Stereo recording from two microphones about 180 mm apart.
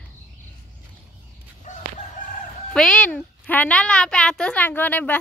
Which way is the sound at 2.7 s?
5° left (ahead or behind).